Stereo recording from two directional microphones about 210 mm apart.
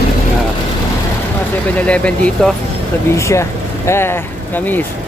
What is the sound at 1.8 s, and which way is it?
Speech, 5° left (ahead or behind).